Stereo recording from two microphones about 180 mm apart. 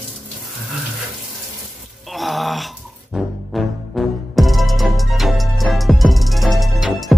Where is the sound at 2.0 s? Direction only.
Centre (ahead or behind).